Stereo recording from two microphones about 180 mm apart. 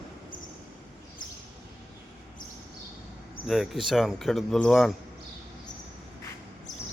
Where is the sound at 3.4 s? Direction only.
Centre (ahead or behind).